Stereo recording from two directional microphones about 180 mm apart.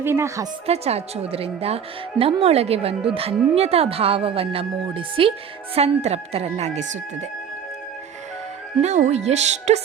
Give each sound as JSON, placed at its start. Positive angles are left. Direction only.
{"t": 0.0, "sound": "a woman's voice", "side_deg": -15}
{"t": 0.7, "sound": "a woman's voice", "side_deg": -35}
{"t": 8.8, "sound": "a woman's voice", "side_deg": -40}